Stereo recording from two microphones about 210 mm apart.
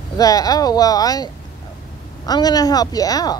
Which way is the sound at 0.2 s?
15° left (ahead or behind).